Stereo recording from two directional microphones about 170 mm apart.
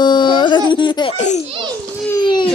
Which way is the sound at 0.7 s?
30° left (ahead or behind).